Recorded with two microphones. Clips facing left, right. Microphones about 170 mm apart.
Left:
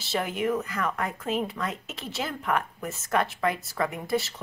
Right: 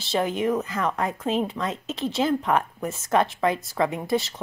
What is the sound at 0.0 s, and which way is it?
A woman's voice, 25° right (ahead or behind).